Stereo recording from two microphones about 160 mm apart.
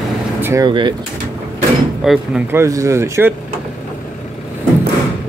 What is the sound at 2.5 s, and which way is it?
Speech, 20° right (ahead or behind).